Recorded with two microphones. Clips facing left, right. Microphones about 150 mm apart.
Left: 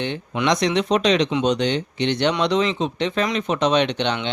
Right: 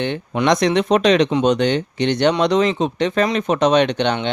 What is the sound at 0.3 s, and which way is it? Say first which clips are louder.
Speech: right 4 dB; 50° right (ahead or behind).